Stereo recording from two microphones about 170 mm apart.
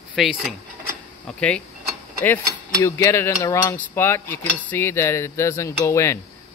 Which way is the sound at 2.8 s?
15° left (ahead or behind).